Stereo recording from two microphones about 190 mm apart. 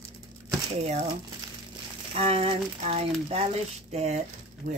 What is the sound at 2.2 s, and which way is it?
Speech, 30° right (ahead or behind).